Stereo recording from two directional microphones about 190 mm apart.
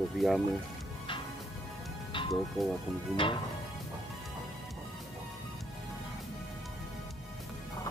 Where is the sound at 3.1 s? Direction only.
25° left (ahead or behind).